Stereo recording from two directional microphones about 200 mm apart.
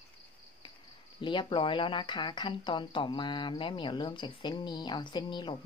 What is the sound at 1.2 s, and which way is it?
Speech, 25° left (ahead or behind).